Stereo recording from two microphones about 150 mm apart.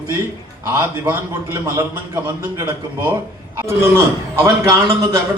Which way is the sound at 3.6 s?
15° right (ahead or behind).